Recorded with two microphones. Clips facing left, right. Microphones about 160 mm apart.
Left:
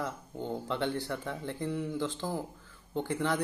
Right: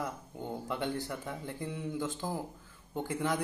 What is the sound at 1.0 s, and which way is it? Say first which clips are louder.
Speech: left 3 dB; 15° right (ahead or behind).